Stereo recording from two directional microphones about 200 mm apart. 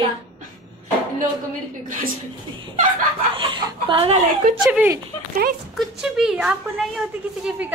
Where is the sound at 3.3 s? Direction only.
25° right (ahead or behind).